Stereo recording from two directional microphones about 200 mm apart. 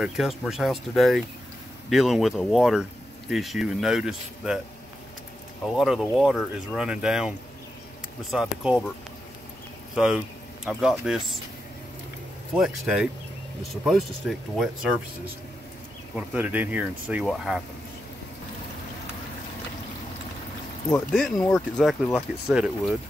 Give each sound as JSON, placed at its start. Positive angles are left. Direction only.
{"t": 0.0, "sound": "speech", "side_deg": 0}
{"t": 5.8, "sound": "speech", "side_deg": 0}
{"t": 9.9, "sound": "speech", "side_deg": -5}
{"t": 12.5, "sound": "speech", "side_deg": 0}
{"t": 16.2, "sound": "speech", "side_deg": -10}
{"t": 21.1, "sound": "speech", "side_deg": 0}